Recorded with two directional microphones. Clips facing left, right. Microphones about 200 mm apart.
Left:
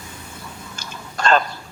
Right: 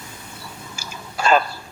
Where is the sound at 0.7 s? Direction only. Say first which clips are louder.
Right 1 dB; 10° right (ahead or behind).